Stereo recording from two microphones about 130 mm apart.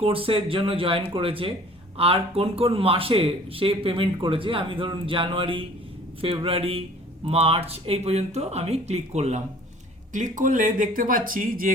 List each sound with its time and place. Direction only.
0.0 s speech: 45° right (ahead or behind)
10.1 s speech: 80° right